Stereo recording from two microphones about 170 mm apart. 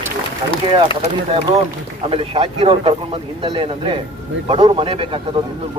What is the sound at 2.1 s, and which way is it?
Speech, 35° right (ahead or behind).